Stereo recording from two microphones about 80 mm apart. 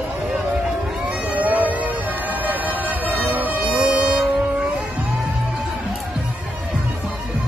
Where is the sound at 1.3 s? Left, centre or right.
Centre.